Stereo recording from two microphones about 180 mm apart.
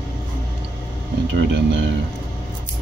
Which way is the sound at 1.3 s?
75° right (ahead or behind).